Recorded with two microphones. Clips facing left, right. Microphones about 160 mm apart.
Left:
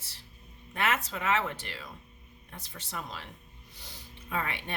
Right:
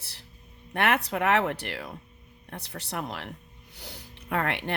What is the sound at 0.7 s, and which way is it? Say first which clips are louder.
Speech: right 5 dB; 65° right (ahead or behind).